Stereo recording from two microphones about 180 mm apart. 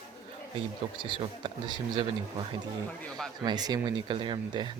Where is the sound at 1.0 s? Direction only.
30° right (ahead or behind).